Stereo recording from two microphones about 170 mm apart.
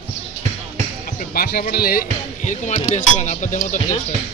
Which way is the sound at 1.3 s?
60° left (ahead or behind).